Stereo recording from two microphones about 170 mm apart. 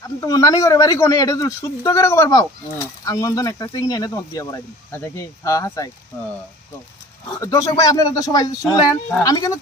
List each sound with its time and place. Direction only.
0.2 s speech: 20° left (ahead or behind)
7.4 s speech: 20° left (ahead or behind)